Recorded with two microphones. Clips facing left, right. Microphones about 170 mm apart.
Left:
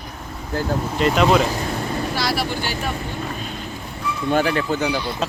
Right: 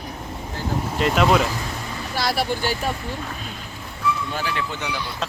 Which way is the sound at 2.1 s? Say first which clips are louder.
Right 5 dB; 50° right (ahead or behind).